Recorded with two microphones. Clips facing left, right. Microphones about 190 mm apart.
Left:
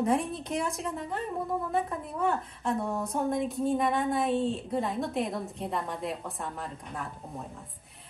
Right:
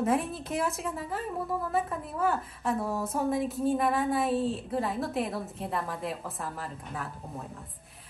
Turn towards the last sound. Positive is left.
turn(degrees=0)  # may be behind; listen again after turning